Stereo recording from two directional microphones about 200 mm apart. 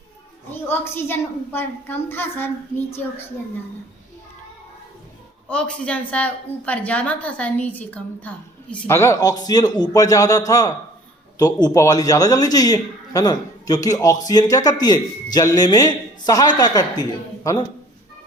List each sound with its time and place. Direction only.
0.5 s a man's voice: 10° left (ahead or behind)
5.5 s a man's voice: 5° left (ahead or behind)